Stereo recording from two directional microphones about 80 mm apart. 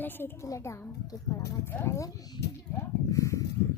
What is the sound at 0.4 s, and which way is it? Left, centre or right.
Speech, left.